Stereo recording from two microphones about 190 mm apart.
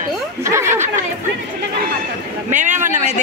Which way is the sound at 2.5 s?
40° right (ahead or behind).